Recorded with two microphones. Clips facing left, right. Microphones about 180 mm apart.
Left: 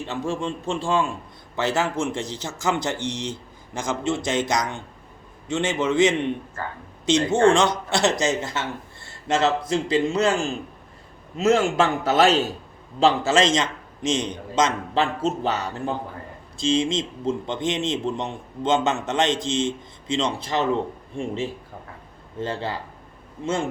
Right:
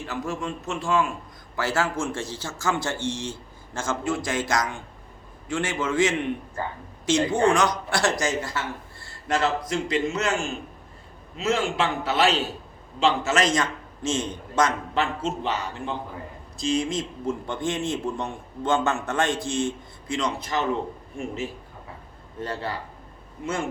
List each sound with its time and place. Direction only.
0.0 s a man's voice: 25° left (ahead or behind)
14.9 s a man's voice: 40° left (ahead or behind)
16.6 s a man's voice: 25° left (ahead or behind)
22.4 s a man's voice: 25° left (ahead or behind)